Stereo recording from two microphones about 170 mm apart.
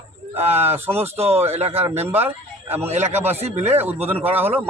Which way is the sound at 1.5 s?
35° right (ahead or behind).